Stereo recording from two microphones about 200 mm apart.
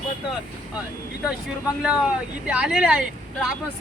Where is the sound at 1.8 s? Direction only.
5° right (ahead or behind).